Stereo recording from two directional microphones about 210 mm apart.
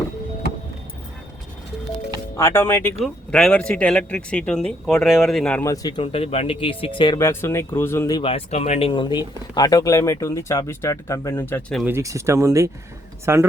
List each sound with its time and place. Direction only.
2.3 s speech: 10° left (ahead or behind)
5.6 s speech: 15° left (ahead or behind)
11.8 s speech: 10° right (ahead or behind)